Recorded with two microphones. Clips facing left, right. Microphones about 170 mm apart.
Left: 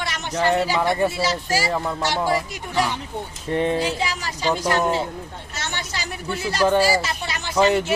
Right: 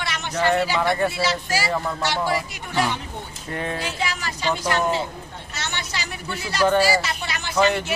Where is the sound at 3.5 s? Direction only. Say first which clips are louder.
Left 7 dB; 25° left (ahead or behind).